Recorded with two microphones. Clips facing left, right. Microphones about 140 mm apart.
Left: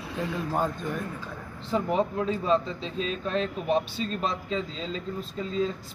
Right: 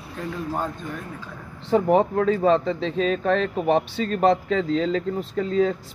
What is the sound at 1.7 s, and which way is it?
Speech, 65° right (ahead or behind).